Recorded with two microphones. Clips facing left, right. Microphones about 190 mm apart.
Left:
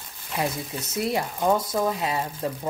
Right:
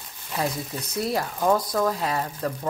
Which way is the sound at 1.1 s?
20° left (ahead or behind).